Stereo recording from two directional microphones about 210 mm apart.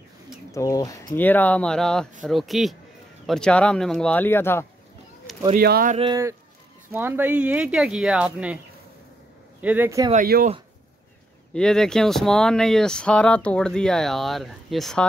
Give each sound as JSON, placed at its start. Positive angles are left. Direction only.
{"t": 0.5, "sound": "speech", "side_deg": 15}
{"t": 5.5, "sound": "speech", "side_deg": -45}
{"t": 5.9, "sound": "speech", "side_deg": -20}
{"t": 9.6, "sound": "speech", "side_deg": -10}
{"t": 10.1, "sound": "speech", "side_deg": -40}
{"t": 11.5, "sound": "speech", "side_deg": 5}